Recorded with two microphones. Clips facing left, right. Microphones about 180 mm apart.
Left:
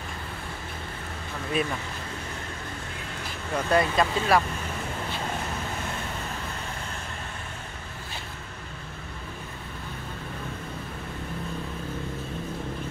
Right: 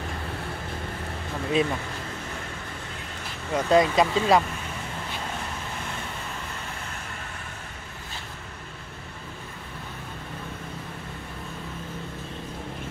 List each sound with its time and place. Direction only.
1.5 s speech: 20° right (ahead or behind)
3.5 s speech: 20° right (ahead or behind)